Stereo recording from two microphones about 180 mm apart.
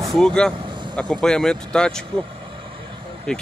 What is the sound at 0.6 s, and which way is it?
Vehicle, 25° right (ahead or behind).